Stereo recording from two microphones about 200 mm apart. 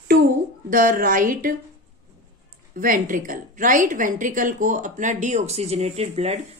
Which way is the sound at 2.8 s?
45° right (ahead or behind).